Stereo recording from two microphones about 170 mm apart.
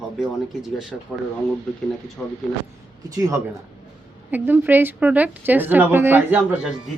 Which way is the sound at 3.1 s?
20° right (ahead or behind).